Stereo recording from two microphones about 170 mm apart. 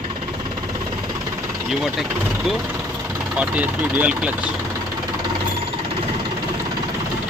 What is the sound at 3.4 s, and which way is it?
Speech, 10° right (ahead or behind).